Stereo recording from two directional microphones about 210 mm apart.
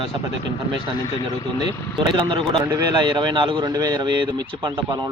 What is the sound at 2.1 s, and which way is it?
Speech, 25° right (ahead or behind).